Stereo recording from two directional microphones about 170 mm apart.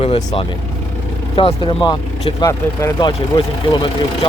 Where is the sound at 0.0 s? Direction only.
35° left (ahead or behind).